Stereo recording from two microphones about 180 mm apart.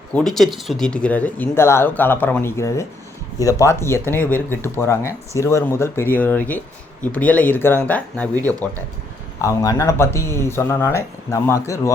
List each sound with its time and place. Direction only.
0.1 s speech: 5° left (ahead or behind)